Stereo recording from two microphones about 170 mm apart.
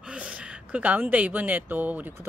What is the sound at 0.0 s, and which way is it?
A woman's voice, 5° right (ahead or behind).